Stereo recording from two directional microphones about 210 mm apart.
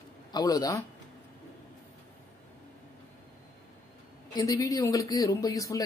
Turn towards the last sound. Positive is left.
turn(degrees=15)  # may be behind; listen again after turning